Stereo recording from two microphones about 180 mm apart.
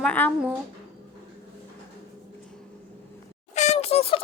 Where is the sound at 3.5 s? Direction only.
40° left (ahead or behind).